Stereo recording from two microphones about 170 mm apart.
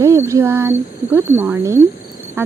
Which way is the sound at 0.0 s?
15° right (ahead or behind).